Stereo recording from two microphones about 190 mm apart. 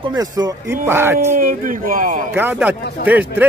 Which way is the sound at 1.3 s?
45° right (ahead or behind).